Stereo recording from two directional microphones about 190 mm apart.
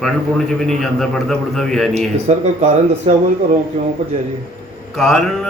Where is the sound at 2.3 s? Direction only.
35° right (ahead or behind).